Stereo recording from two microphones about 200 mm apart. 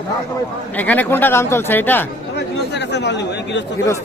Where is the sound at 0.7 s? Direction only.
10° left (ahead or behind).